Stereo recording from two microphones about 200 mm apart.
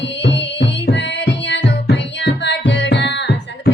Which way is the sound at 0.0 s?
60° left (ahead or behind).